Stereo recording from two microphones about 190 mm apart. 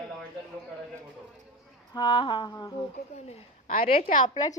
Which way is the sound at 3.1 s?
35° left (ahead or behind).